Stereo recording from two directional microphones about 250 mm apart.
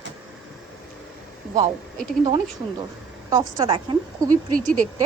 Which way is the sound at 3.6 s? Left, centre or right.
Centre.